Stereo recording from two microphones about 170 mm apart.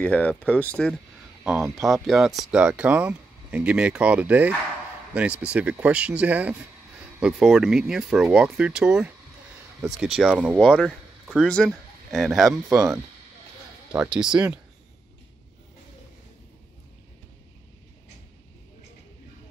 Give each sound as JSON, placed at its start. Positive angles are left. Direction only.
{"t": 0.0, "sound": "speech", "side_deg": 5}
{"t": 10.6, "sound": "speech", "side_deg": 5}
{"t": 12.7, "sound": "speech", "side_deg": -20}
{"t": 13.9, "sound": "speech", "side_deg": -5}